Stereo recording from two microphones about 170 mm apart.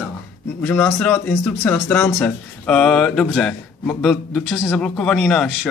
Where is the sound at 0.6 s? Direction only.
10° left (ahead or behind).